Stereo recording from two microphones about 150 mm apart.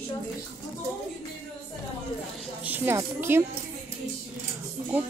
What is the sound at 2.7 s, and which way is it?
Speech, 15° right (ahead or behind).